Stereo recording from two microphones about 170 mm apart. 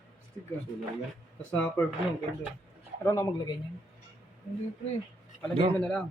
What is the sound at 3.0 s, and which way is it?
Speech, 15° left (ahead or behind).